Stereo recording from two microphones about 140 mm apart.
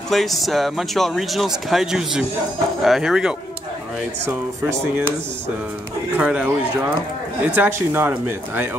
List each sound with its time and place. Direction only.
0.1 s speech: centre (ahead or behind)
4.3 s speech: 15° right (ahead or behind)
6.1 s speech: 10° right (ahead or behind)